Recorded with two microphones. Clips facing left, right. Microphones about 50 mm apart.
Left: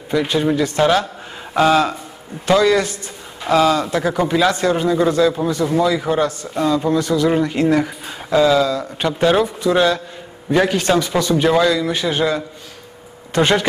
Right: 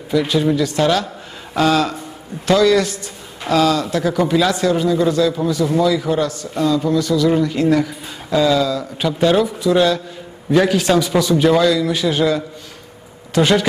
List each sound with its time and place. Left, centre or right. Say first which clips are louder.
0.1 s a man's voice: right 1 dB; centre
4.6 s a man's voice: even; left